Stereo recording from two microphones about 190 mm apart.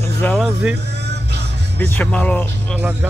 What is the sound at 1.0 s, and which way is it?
Music, 60° right (ahead or behind).